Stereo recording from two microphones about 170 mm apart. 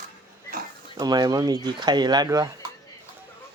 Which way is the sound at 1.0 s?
20° right (ahead or behind).